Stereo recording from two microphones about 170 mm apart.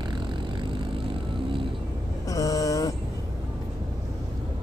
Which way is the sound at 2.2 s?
20° left (ahead or behind).